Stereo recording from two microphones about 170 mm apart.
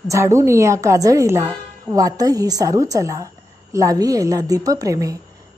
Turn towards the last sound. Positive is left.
turn(degrees=-20)  # may be behind; listen again after turning